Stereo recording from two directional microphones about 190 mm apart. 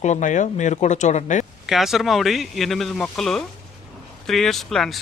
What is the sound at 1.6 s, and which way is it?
Speech, centre (ahead or behind).